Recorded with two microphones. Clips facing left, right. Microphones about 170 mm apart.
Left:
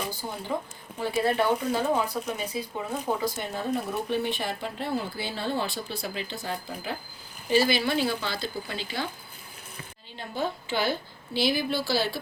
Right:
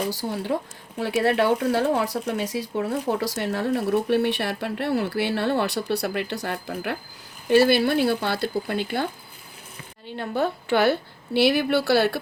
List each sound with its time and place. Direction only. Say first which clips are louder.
0.1 s speech: right 6 dB; 85° right; by 9.0 s 55° right (ahead or behind)
10.1 s speech: right 6 dB; 60° right (ahead or behind)